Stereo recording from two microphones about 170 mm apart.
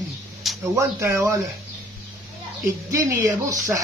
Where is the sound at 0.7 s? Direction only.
15° right (ahead or behind).